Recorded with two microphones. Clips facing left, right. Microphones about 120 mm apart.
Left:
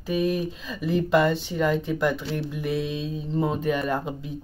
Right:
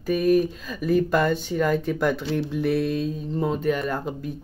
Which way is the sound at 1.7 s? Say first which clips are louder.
Right 1 dB; 20° left (ahead or behind).